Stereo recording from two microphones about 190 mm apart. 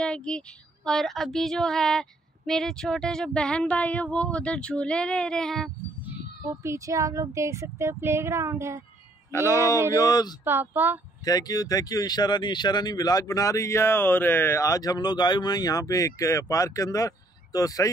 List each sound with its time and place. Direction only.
0.0 s speech: 5° left (ahead or behind)
6.6 s speech: 15° right (ahead or behind)
9.3 s speech: 15° left (ahead or behind)
10.4 s speech: 10° right (ahead or behind)
11.2 s speech: 20° left (ahead or behind)